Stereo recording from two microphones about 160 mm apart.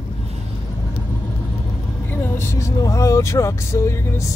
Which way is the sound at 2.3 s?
15° left (ahead or behind).